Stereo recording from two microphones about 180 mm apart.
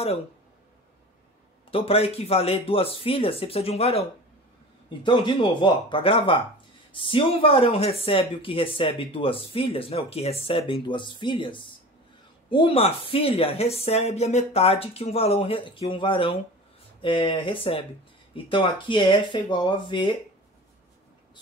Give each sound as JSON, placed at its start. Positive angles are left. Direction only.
{"t": 1.7, "sound": "a woman's voice", "side_deg": 30}